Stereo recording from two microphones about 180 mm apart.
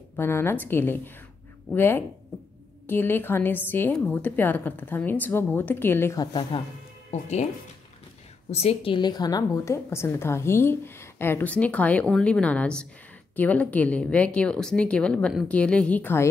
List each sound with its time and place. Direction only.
0.1 s a woman's voice: 15° left (ahead or behind)
6.5 s speech: 30° left (ahead or behind)
8.5 s a woman's voice: 35° left (ahead or behind); by 16.3 s 10° left (ahead or behind)